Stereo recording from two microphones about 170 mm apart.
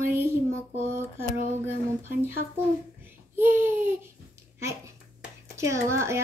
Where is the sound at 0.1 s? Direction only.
15° right (ahead or behind).